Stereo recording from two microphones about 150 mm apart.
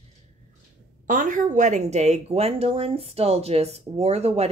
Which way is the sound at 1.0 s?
60° right (ahead or behind).